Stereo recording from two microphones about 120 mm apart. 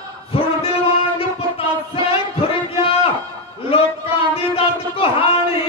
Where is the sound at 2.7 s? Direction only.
55° left (ahead or behind).